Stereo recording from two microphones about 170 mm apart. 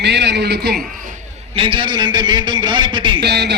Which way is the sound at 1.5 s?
30° right (ahead or behind).